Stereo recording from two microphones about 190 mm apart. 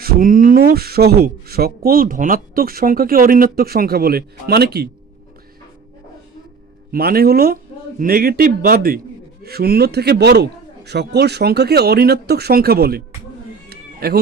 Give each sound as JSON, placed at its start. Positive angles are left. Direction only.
{"t": 0.0, "sound": "speech", "side_deg": -50}
{"t": 6.9, "sound": "a man's voice", "side_deg": -50}
{"t": 13.7, "sound": "a sound", "side_deg": -55}